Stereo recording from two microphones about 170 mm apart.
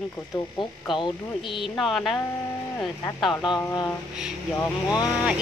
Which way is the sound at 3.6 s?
15° left (ahead or behind).